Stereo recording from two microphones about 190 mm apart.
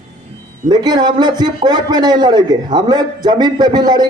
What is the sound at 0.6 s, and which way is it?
A man's voice, 20° right (ahead or behind).